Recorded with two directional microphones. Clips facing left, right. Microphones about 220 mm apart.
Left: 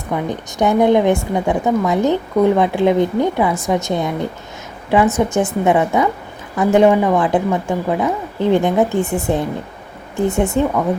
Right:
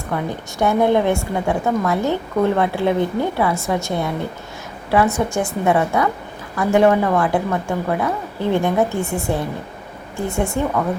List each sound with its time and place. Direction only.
0.1 s a woman's voice: 20° left (ahead or behind)
5.1 s a woman's voice: 20° left (ahead or behind)